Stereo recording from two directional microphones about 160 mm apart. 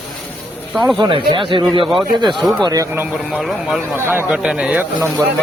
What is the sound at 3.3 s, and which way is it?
A man's voice, centre (ahead or behind).